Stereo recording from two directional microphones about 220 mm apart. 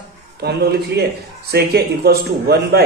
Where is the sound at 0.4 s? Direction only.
45° right (ahead or behind).